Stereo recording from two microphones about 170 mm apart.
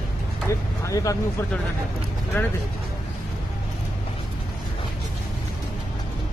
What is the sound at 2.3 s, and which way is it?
Speech, 10° left (ahead or behind).